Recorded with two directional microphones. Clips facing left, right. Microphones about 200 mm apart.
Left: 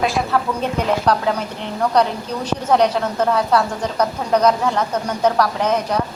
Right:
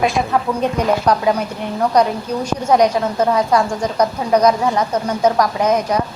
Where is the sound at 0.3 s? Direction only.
15° right (ahead or behind).